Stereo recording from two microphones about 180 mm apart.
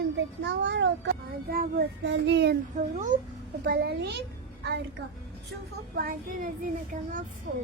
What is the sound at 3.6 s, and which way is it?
Child singing, 60° right (ahead or behind).